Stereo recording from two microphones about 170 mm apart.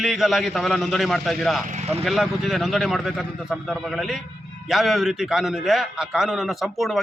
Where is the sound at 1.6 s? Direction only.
45° right (ahead or behind).